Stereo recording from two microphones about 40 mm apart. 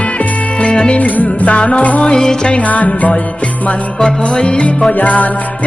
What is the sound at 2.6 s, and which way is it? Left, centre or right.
Music, left.